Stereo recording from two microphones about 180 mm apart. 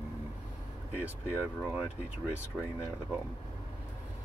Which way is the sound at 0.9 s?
10° right (ahead or behind).